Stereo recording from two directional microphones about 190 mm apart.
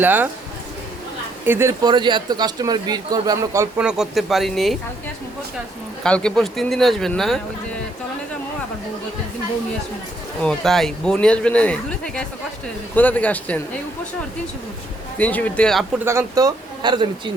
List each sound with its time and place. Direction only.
0.0 s speech: 10° right (ahead or behind)
1.5 s a man's voice: 15° right (ahead or behind)
3.8 s speech: 5° right (ahead or behind)
6.0 s speech: 5° left (ahead or behind)
10.4 s speech: centre (ahead or behind)
15.2 s speech: 10° left (ahead or behind)
16.0 s a man's voice: 15° right (ahead or behind)